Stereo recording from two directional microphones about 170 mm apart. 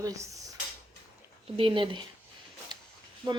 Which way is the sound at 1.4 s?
35° right (ahead or behind).